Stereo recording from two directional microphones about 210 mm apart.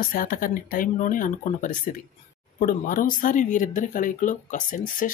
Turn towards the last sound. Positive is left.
turn(degrees=40)  # may be behind; listen again after turning